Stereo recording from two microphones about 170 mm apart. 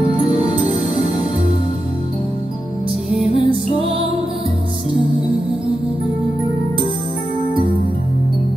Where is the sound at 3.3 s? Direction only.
35° left (ahead or behind).